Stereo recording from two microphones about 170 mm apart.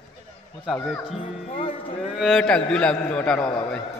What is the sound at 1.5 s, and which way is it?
Music, 35° left (ahead or behind).